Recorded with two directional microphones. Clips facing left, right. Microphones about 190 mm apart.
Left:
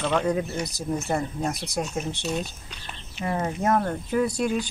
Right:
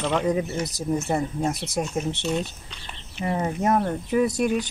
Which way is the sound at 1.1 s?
20° right (ahead or behind).